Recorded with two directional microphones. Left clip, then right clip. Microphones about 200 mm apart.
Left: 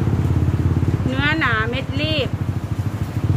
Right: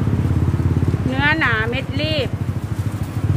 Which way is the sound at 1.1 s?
15° right (ahead or behind).